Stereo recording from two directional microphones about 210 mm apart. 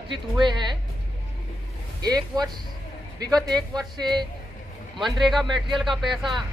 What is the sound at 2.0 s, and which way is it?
Speech, 20° right (ahead or behind).